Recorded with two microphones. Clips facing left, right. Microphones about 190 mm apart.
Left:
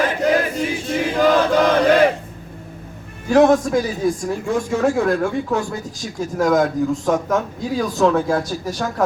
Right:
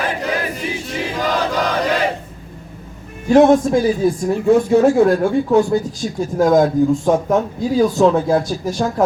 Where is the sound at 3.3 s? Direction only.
25° right (ahead or behind).